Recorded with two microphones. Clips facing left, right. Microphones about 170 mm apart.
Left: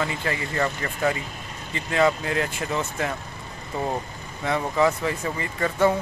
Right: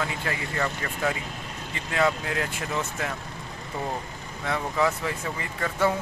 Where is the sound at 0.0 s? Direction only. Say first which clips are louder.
Left 3 dB; centre (ahead or behind).